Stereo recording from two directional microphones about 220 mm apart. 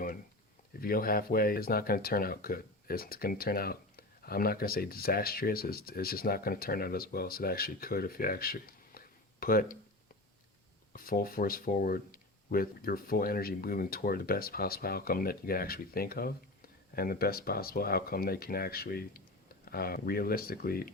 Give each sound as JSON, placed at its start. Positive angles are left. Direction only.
{"t": 0.8, "sound": "speech", "side_deg": 40}
{"t": 10.9, "sound": "speech", "side_deg": 40}